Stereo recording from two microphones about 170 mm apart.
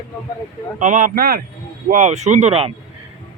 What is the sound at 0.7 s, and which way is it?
Speech, 50° right (ahead or behind).